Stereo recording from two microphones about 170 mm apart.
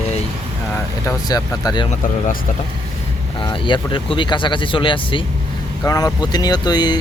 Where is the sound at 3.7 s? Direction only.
30° left (ahead or behind).